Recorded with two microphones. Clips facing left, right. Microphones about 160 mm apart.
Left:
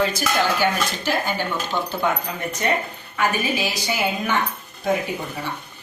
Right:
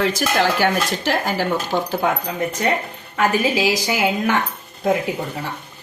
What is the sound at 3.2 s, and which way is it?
Speech, 90° right.